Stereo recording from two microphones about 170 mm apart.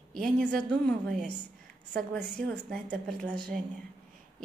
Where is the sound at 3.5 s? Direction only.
50° right (ahead or behind).